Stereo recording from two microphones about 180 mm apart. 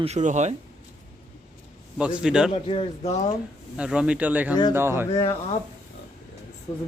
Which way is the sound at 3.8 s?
5° right (ahead or behind).